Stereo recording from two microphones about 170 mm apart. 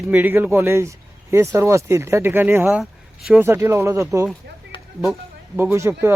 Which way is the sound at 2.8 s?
5° right (ahead or behind).